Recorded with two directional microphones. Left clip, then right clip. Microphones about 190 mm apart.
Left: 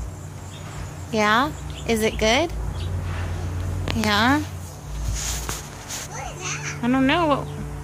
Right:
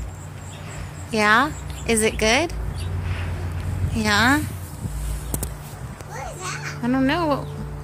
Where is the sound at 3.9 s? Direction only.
10° left (ahead or behind).